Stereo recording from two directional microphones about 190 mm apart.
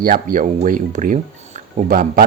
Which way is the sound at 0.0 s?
45° right (ahead or behind).